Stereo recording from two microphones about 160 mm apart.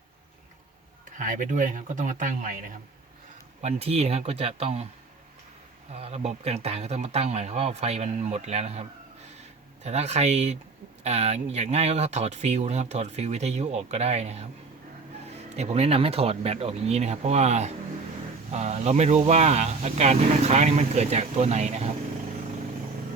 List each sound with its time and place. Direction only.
1.2 s speech: 55° right (ahead or behind)
3.6 s speech: 40° right (ahead or behind)
5.9 s speech: 40° right (ahead or behind)
15.5 s speech: 40° right (ahead or behind)